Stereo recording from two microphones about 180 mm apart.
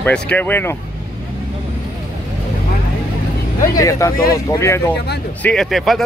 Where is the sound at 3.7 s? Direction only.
20° left (ahead or behind).